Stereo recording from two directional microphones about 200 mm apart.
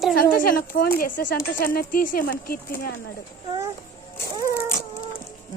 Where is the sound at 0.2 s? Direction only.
45° left (ahead or behind).